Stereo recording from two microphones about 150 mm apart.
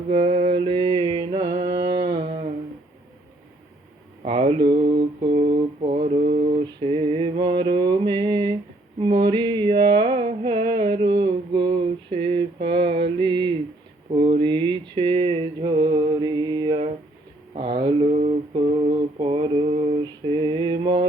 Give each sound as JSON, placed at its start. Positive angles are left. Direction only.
{"t": 0.1, "sound": "mantra", "side_deg": -40}
{"t": 4.3, "sound": "mantra", "side_deg": -35}
{"t": 4.8, "sound": "mantra", "side_deg": -90}
{"t": 5.3, "sound": "mantra", "side_deg": -45}
{"t": 6.3, "sound": "mantra", "side_deg": -55}
{"t": 6.6, "sound": "mantra", "side_deg": -35}
{"t": 9.0, "sound": "a sound", "side_deg": -35}
{"t": 14.1, "sound": "mantra", "side_deg": -35}
{"t": 18.1, "sound": "a sound", "side_deg": -50}
{"t": 18.5, "sound": "mantra", "side_deg": -40}